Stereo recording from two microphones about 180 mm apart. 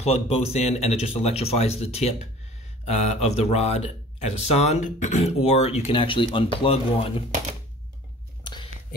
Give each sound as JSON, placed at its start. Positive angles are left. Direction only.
{"t": 0.0, "sound": "speech", "side_deg": 35}